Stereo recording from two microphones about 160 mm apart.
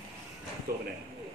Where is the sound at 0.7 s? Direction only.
70° right (ahead or behind).